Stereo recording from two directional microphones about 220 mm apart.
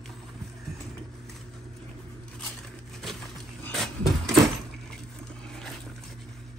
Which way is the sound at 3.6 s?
Centre (ahead or behind).